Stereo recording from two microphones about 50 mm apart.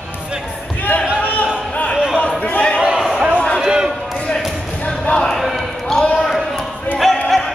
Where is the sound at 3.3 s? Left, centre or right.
Left.